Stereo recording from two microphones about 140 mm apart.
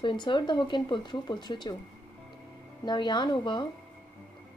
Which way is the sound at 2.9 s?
30° left (ahead or behind).